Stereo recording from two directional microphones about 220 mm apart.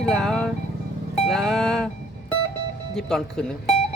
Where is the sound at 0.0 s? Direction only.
Centre (ahead or behind).